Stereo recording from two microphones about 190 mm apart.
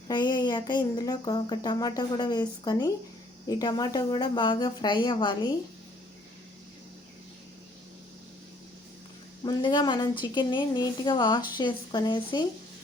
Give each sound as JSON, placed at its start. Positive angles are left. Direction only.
{"t": 0.1, "sound": "speech", "side_deg": 20}
{"t": 9.4, "sound": "speech", "side_deg": 25}